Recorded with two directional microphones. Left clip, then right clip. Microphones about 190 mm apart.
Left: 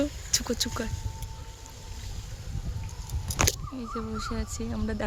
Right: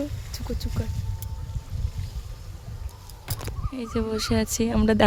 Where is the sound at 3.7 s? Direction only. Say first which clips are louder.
Right 7 dB; 45° right (ahead or behind).